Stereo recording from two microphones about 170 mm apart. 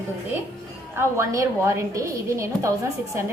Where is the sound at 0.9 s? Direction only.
15° right (ahead or behind).